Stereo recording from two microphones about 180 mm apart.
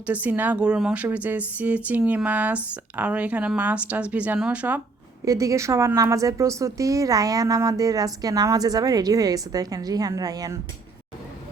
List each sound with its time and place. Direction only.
0.1 s a woman's voice: 10° right (ahead or behind)
5.2 s a woman's voice: 20° right (ahead or behind)